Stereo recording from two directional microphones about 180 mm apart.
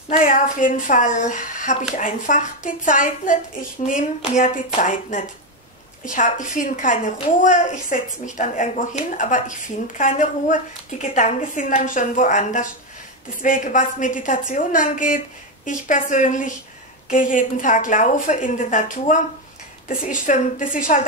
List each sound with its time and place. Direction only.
0.1 s a woman's voice: 45° left (ahead or behind)